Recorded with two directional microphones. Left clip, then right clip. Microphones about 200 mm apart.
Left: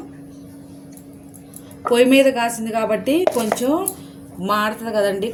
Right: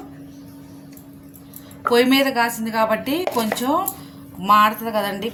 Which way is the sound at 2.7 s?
45° right (ahead or behind).